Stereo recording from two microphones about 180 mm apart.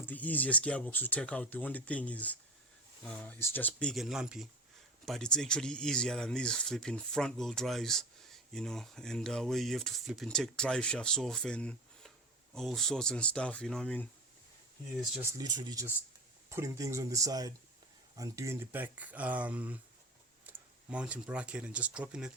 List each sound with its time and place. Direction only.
0.0 s speech: 10° left (ahead or behind)
15.2 s speech: 20° right (ahead or behind); by 22.3 s 5° right (ahead or behind)